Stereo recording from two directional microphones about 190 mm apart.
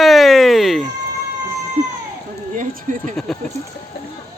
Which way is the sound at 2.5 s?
45° right (ahead or behind).